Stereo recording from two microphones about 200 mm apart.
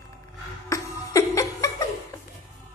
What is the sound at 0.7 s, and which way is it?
Laughter, 15° left (ahead or behind).